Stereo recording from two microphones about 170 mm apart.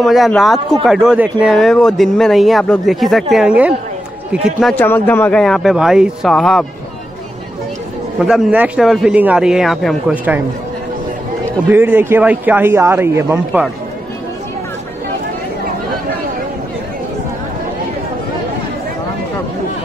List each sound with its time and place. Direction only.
0.0 s speech: centre (ahead or behind)
8.2 s speech: 5° right (ahead or behind)
11.7 s speech: 10° right (ahead or behind)